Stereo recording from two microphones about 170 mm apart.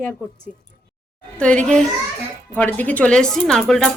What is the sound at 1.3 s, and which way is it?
Speech, 5° left (ahead or behind).